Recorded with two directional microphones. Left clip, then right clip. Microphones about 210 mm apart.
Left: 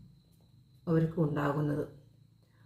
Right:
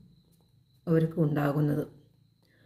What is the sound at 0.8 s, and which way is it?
Speech, 35° right (ahead or behind).